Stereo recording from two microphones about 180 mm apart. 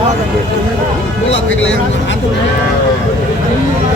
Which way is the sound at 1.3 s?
90° left.